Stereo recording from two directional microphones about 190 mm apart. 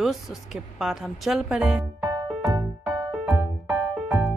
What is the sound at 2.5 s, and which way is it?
Music, 20° right (ahead or behind).